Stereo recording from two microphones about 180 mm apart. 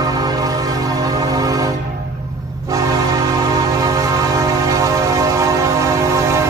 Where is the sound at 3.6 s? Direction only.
20° right (ahead or behind).